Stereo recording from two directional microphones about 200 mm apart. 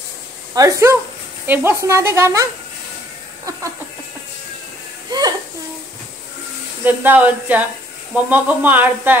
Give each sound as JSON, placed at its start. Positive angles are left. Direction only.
{"t": 0.6, "sound": "speech", "side_deg": -15}
{"t": 6.8, "sound": "speech", "side_deg": -10}